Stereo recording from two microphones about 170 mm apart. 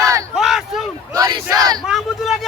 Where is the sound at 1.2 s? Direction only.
20° right (ahead or behind).